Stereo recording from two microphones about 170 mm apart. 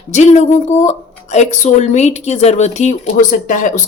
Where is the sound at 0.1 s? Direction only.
45° left (ahead or behind).